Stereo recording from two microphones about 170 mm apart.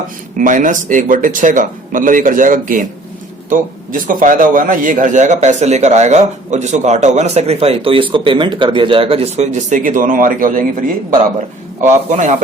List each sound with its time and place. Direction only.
0.3 s a man's voice: 50° right (ahead or behind)